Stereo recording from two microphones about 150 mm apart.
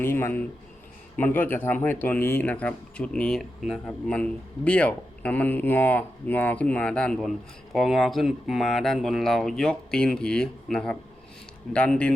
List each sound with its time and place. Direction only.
0.0 s speech: 15° left (ahead or behind)